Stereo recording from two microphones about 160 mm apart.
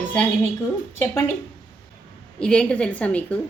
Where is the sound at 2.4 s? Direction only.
5° left (ahead or behind).